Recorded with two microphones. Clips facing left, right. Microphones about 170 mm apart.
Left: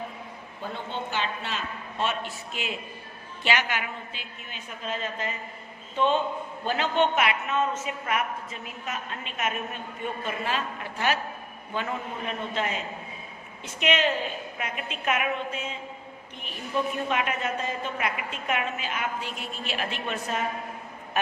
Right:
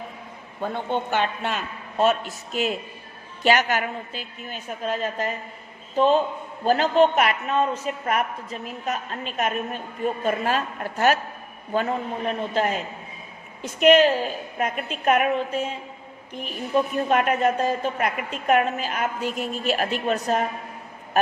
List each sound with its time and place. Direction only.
0.6 s a man's voice: 55° right (ahead or behind)
16.7 s a man's voice: 45° right (ahead or behind)